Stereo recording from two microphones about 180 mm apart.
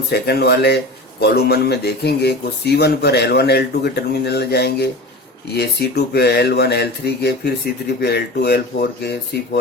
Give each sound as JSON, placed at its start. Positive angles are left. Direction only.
{"t": 0.1, "sound": "speech", "side_deg": 65}